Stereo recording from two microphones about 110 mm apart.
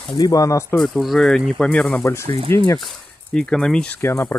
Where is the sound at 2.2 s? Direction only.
60° right (ahead or behind).